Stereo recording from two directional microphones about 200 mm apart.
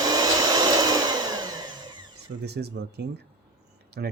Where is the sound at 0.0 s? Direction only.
20° right (ahead or behind).